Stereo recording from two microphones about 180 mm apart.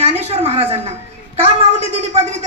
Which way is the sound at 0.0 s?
35° right (ahead or behind).